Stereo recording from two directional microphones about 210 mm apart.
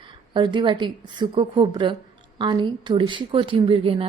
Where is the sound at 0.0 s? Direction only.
20° right (ahead or behind).